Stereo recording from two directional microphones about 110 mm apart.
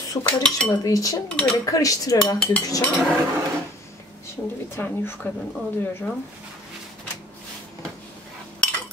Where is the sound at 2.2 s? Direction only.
10° left (ahead or behind).